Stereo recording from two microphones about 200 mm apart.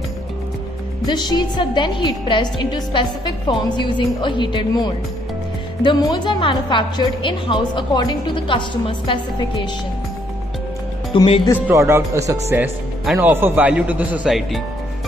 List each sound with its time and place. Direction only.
1.0 s a woman's voice: 20° left (ahead or behind)
11.1 s a woman's voice: 25° left (ahead or behind)
11.6 s a man's voice: 15° right (ahead or behind)